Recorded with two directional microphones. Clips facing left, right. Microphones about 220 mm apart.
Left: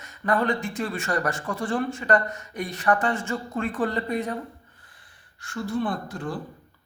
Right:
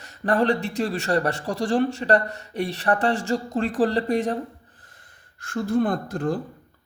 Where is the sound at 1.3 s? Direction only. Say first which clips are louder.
Right 4 dB; 70° right (ahead or behind).